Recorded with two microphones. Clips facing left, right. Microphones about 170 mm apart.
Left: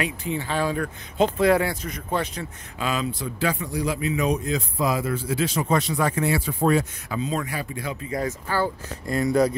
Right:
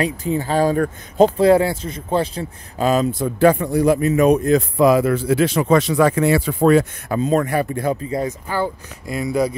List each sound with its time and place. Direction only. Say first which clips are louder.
0.0 s speech: right 7 dB; 40° right (ahead or behind); by 6.9 s 75° right (ahead or behind)
7.1 s speech: right 9 dB; 50° right (ahead or behind)
8.1 s speech: right 4 dB; 20° right (ahead or behind)